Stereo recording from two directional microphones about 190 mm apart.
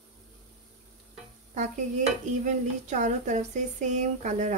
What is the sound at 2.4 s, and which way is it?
Speech, 40° right (ahead or behind).